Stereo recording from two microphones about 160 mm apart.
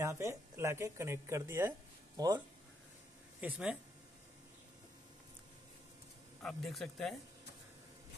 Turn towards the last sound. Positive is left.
turn(degrees=0)  # may be behind; listen again after turning